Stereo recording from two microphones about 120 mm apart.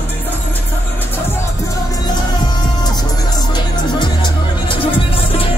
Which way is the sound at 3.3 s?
40° left (ahead or behind).